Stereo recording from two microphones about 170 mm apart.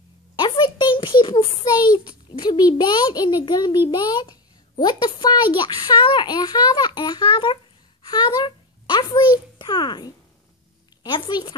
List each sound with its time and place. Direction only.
0.4 s a child's voice: 25° left (ahead or behind)